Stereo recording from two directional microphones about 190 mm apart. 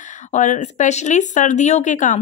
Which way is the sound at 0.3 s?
40° left (ahead or behind).